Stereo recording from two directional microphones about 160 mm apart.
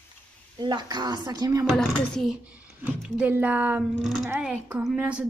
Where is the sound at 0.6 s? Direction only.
30° right (ahead or behind).